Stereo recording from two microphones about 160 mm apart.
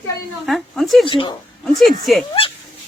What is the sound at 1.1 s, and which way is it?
Speech, 30° left (ahead or behind).